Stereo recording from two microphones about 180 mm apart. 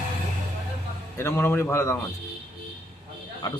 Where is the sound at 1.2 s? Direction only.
15° left (ahead or behind).